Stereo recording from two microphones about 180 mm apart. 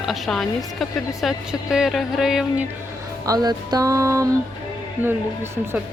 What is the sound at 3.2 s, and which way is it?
Music, 20° right (ahead or behind).